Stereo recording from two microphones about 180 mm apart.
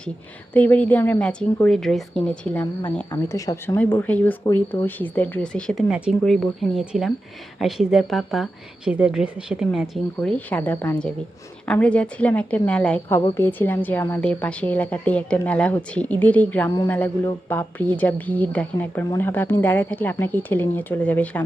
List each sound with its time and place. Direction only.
0.5 s a woman's voice: 10° left (ahead or behind)
3.1 s a woman's voice: 20° left (ahead or behind)